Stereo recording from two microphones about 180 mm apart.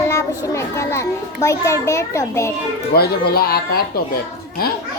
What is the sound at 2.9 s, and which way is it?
Speech, 60° left (ahead or behind).